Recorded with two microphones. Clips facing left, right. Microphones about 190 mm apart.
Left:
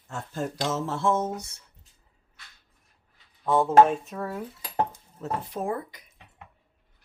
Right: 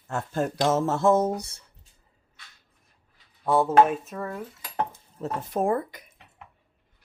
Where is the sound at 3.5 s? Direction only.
10° right (ahead or behind).